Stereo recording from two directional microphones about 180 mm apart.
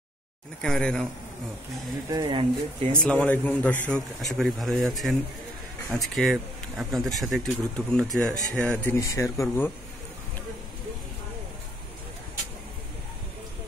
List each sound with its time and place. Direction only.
0.6 s speech: 5° left (ahead or behind)
2.0 s speech: 25° right (ahead or behind)
3.0 s a man's voice: 5° left (ahead or behind)